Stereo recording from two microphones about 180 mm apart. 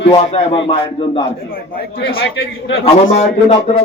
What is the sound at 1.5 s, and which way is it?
A man's voice, 55° left (ahead or behind).